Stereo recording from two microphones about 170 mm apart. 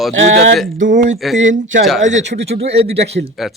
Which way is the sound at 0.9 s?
45° right (ahead or behind).